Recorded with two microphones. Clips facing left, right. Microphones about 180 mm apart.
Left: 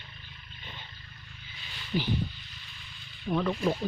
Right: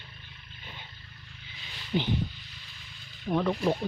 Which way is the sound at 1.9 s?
20° right (ahead or behind).